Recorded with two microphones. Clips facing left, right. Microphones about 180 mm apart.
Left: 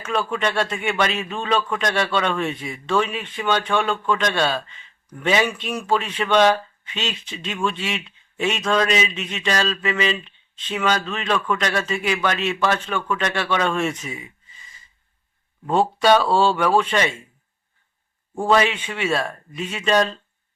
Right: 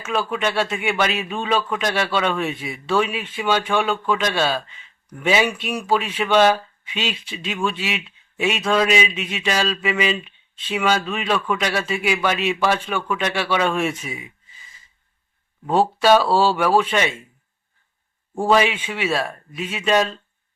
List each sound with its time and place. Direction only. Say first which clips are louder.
0.0 s speech: even; 5° right (ahead or behind)
15.6 s speech: right 1 dB; 5° right (ahead or behind)
18.3 s speech: right 1 dB; 5° right (ahead or behind)